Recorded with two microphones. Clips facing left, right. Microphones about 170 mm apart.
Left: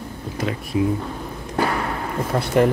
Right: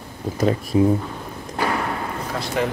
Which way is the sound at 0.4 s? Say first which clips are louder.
Right 4 dB; 40° right (ahead or behind).